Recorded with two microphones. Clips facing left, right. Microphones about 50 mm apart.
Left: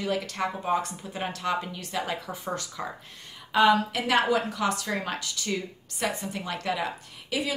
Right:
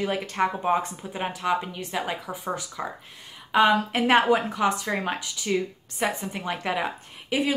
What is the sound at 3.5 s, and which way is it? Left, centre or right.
A woman's voice, right.